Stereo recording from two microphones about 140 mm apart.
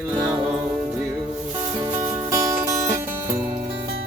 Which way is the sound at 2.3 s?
25° right (ahead or behind).